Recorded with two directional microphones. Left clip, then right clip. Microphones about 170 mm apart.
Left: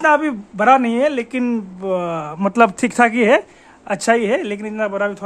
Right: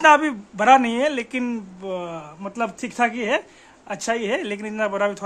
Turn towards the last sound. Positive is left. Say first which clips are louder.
# left 2 dB
turn(degrees=-10)  # may be behind; listen again after turning